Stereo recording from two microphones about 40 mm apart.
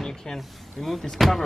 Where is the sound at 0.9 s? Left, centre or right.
Centre.